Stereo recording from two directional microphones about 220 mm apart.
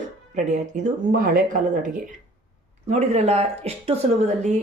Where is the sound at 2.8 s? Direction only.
30° right (ahead or behind).